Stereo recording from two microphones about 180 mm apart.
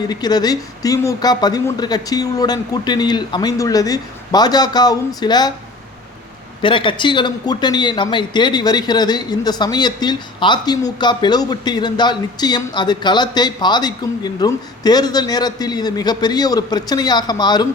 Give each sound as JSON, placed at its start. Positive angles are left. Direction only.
{"t": 0.1, "sound": "a man's voice", "side_deg": 20}
{"t": 6.6, "sound": "a man's voice", "side_deg": 30}